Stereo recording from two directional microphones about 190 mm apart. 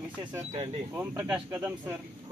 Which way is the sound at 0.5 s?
35° right (ahead or behind).